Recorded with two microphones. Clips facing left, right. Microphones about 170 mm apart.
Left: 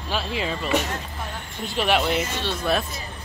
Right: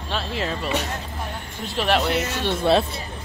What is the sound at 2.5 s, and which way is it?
Speech, 25° right (ahead or behind).